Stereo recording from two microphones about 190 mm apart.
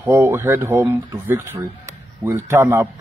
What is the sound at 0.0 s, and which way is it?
A man's voice, 10° right (ahead or behind).